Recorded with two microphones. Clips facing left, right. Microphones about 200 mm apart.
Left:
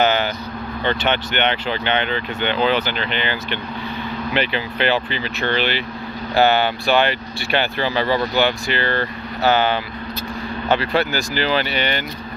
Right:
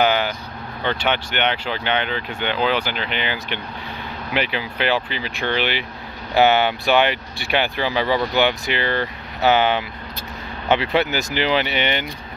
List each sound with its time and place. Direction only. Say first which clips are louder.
0.0 s vehicle: left 1 dB; 10° right (ahead or behind)
0.8 s speech: left 1 dB; 10° right (ahead or behind)